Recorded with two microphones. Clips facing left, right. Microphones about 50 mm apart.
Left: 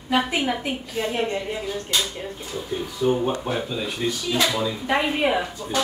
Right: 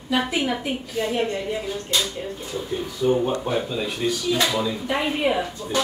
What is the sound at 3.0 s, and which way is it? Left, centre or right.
Speech, centre.